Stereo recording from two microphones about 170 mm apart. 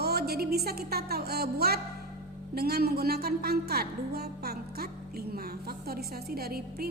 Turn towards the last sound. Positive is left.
turn(degrees=-65)  # may be behind; listen again after turning